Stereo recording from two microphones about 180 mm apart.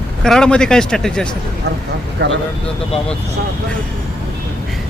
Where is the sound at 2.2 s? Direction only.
70° right (ahead or behind).